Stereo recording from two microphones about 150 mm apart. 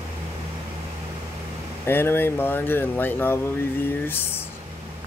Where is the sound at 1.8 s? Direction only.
15° left (ahead or behind).